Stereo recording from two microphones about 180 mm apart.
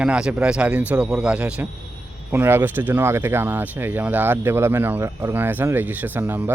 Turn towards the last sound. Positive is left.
turn(degrees=-10)  # may be behind; listen again after turning